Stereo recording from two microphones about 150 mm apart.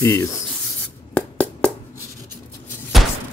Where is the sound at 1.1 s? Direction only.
10° left (ahead or behind).